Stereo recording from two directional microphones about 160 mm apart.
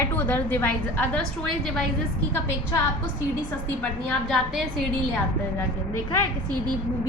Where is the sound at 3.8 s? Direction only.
5° left (ahead or behind).